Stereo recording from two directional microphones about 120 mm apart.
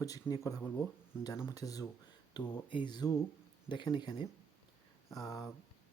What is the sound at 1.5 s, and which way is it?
Speech, 30° left (ahead or behind).